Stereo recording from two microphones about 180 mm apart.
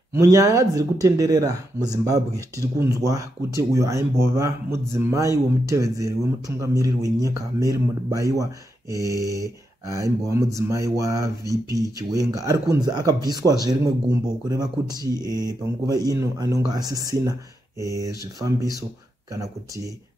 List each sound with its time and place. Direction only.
0.1 s speech: 15° right (ahead or behind)